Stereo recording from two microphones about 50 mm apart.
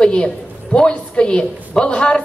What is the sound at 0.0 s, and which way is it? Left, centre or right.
A woman's voice, centre.